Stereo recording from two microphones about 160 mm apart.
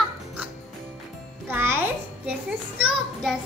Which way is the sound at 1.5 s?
15° right (ahead or behind).